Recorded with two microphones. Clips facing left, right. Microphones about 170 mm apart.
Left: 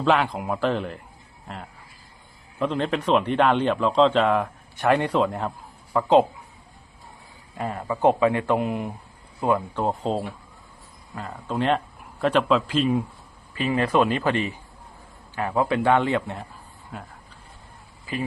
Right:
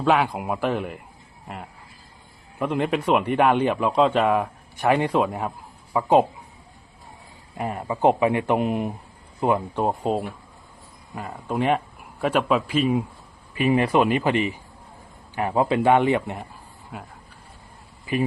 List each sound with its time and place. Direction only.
0.0 s speech: 10° right (ahead or behind)
2.6 s speech: 10° right (ahead or behind)
7.6 s speech: 15° right (ahead or behind)
18.1 s speech: 20° right (ahead or behind)